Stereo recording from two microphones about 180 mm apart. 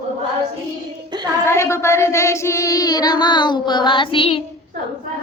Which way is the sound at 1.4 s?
15° left (ahead or behind).